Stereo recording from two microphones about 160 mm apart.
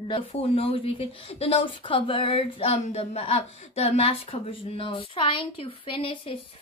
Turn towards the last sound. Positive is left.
turn(degrees=35)  # may be behind; listen again after turning